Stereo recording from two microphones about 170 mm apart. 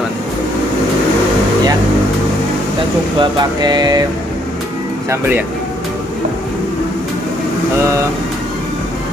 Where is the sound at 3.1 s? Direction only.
25° right (ahead or behind).